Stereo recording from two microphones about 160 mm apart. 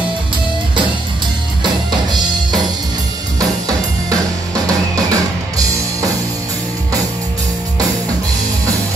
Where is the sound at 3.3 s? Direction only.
20° right (ahead or behind).